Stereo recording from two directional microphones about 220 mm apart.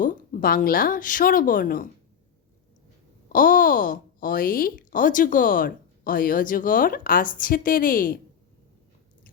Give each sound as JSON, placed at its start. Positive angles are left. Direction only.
{"t": 0.0, "sound": "speech", "side_deg": 35}
{"t": 3.3, "sound": "speech", "side_deg": 40}